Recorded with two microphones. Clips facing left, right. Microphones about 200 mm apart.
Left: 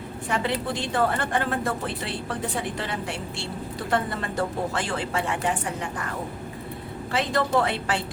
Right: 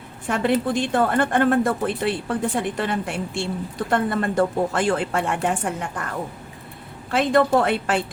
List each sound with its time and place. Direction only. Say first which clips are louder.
0.3 s a woman's voice: right 6 dB; 50° right (ahead or behind)
7.1 s a woman's voice: right 6 dB; 55° right (ahead or behind)